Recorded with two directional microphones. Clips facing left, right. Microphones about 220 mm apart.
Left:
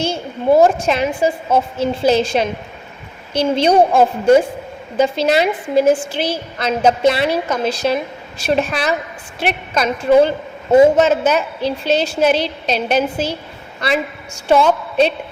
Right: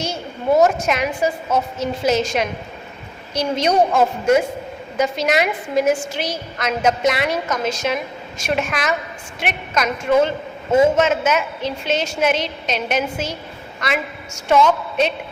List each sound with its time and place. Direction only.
0.0 s a woman's voice: 30° left (ahead or behind)